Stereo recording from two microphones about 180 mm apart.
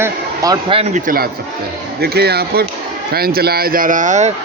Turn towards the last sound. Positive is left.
turn(degrees=-40)  # may be behind; listen again after turning